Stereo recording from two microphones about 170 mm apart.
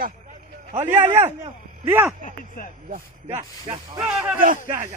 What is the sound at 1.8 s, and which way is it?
Speech, 15° right (ahead or behind).